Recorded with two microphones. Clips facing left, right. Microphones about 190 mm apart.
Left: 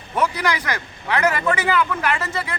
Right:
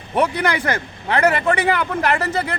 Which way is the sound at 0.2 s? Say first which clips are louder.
Right 3 dB; 55° right (ahead or behind).